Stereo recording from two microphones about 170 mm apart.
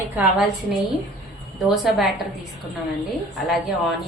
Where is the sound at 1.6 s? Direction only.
Centre (ahead or behind).